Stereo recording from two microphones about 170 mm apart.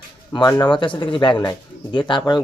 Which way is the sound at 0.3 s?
25° left (ahead or behind).